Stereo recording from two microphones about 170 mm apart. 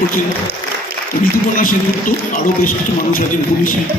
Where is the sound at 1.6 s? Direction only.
55° left (ahead or behind).